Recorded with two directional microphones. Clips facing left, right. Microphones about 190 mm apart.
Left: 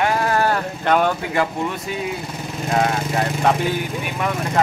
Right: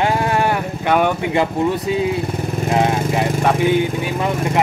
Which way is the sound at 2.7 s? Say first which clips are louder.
Right 2 dB; 20° right (ahead or behind).